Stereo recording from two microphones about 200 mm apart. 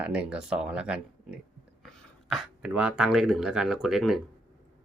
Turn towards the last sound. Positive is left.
turn(degrees=0)  # may be behind; listen again after turning